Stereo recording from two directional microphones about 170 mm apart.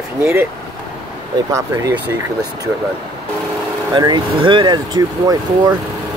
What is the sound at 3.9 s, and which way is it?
Speech, 25° right (ahead or behind).